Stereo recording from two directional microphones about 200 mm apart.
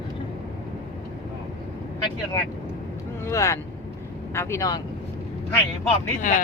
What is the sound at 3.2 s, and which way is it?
Speech, 15° left (ahead or behind).